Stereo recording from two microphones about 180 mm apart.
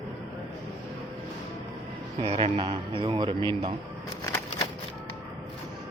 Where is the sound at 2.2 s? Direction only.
30° right (ahead or behind).